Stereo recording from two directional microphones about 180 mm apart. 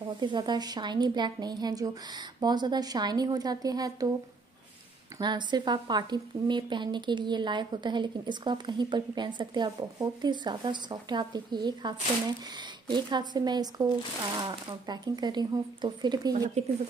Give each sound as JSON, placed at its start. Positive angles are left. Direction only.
{"t": 0.2, "sound": "a woman's voice", "side_deg": -25}
{"t": 5.2, "sound": "a woman's voice", "side_deg": -25}
{"t": 16.6, "sound": "speech", "side_deg": -40}